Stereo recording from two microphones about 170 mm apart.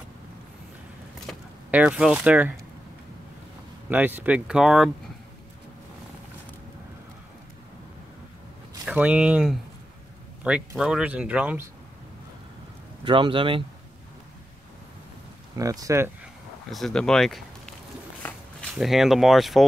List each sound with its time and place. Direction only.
1.3 s a sound: 5° left (ahead or behind)
1.7 s speech: 5° right (ahead or behind)
3.9 s speech: 10° right (ahead or behind)
8.8 s speech: 5° right (ahead or behind)
13.0 s speech: 30° right (ahead or behind)
15.5 s speech: 20° right (ahead or behind)
16.7 s speech: 5° left (ahead or behind)
18.2 s a sound: 5° left (ahead or behind)